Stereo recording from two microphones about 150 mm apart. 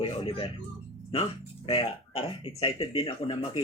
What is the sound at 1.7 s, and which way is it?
Speech, 40° left (ahead or behind).